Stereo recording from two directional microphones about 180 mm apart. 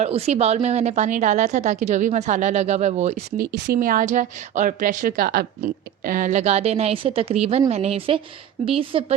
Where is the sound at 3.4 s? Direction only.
55° right (ahead or behind).